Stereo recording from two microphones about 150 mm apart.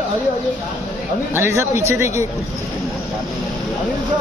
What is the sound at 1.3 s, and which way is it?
Speech, 15° right (ahead or behind).